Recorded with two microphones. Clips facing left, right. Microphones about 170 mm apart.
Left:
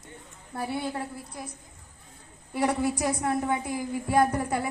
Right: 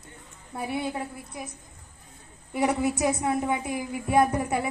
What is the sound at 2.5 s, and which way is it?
A woman's voice, 20° right (ahead or behind).